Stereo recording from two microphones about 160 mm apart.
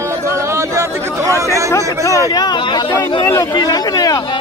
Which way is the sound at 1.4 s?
20° right (ahead or behind).